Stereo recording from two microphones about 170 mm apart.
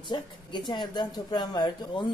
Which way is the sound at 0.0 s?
25° left (ahead or behind).